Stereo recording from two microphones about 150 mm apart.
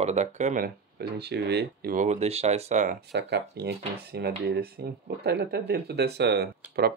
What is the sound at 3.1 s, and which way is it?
Speech, 90° right.